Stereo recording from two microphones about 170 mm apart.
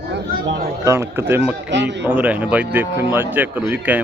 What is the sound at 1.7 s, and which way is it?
Speech, 90° right.